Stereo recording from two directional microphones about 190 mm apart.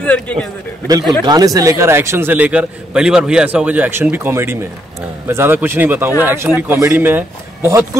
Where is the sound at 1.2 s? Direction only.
20° right (ahead or behind).